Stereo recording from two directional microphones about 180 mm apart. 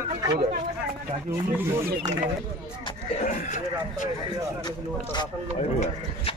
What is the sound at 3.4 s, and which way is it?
Speech, 45° left (ahead or behind).